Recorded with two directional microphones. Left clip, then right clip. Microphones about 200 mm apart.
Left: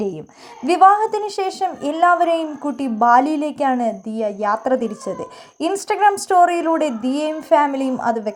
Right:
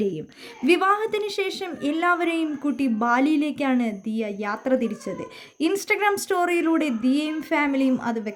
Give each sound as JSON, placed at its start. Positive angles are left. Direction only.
{"t": 0.6, "sound": "a woman's voice", "side_deg": -5}